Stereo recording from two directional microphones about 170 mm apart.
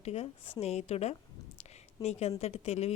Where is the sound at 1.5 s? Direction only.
40° left (ahead or behind).